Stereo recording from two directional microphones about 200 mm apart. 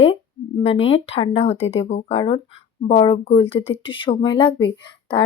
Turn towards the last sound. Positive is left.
turn(degrees=25)  # may be behind; listen again after turning